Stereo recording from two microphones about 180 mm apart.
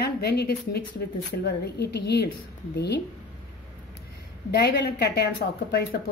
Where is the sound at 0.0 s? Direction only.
65° left (ahead or behind).